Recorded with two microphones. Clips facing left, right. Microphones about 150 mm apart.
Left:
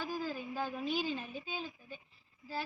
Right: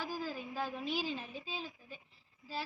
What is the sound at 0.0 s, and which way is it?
A woman's voice, centre (ahead or behind).